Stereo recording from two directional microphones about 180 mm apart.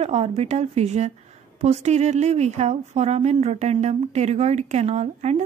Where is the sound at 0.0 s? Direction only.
35° right (ahead or behind).